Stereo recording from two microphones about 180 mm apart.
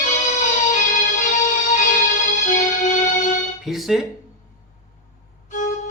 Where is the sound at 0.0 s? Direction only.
45° left (ahead or behind).